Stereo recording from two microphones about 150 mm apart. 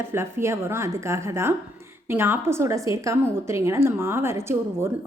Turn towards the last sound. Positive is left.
turn(degrees=-15)  # may be behind; listen again after turning